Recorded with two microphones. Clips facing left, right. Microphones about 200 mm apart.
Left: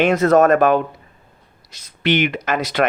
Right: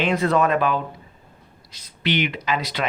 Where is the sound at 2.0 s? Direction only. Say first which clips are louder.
Left 5 dB; 50° left (ahead or behind).